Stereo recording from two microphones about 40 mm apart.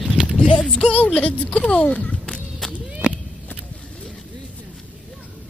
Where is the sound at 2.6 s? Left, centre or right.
Centre.